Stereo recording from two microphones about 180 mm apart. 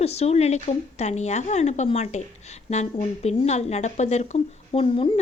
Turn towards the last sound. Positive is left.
turn(degrees=30)  # may be behind; listen again after turning